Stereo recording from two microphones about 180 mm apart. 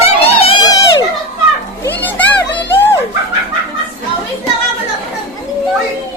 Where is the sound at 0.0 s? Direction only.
35° left (ahead or behind).